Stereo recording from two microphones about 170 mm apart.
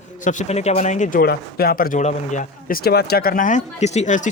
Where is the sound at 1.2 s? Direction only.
65° left (ahead or behind).